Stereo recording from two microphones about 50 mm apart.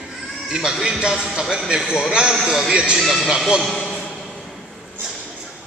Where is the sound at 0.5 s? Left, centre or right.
Centre.